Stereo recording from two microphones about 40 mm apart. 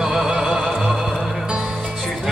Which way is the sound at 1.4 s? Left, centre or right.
Centre.